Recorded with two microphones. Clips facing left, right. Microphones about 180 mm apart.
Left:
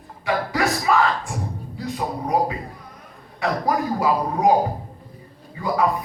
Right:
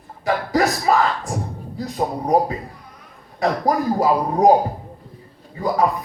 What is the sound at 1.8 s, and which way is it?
Speech, 40° right (ahead or behind).